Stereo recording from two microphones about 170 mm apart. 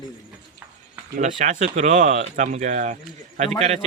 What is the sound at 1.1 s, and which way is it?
Speech, 45° right (ahead or behind).